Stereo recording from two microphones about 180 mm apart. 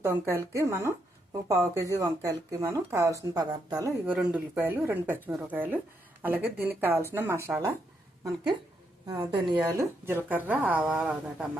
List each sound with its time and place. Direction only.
0.0 s speech: 15° right (ahead or behind)
4.0 s speech: 10° right (ahead or behind)
9.0 s speech: 25° right (ahead or behind); by 11.4 s 5° right (ahead or behind)